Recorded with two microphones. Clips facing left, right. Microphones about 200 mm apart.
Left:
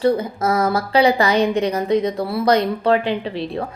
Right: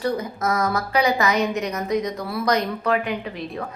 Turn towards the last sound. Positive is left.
turn(degrees=30)  # may be behind; listen again after turning